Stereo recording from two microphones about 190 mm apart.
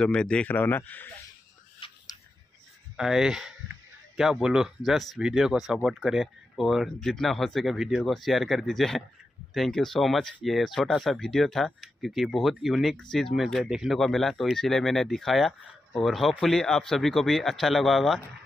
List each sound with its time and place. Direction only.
0.0 s speech: 5° left (ahead or behind)
1.8 s scissors: 30° left (ahead or behind)
3.0 s speech: centre (ahead or behind)